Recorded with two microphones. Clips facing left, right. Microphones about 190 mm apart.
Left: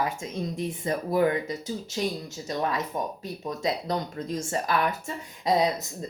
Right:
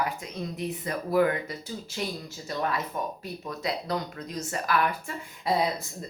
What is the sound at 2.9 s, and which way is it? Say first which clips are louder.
Speech: left 2 dB; 20° left (ahead or behind).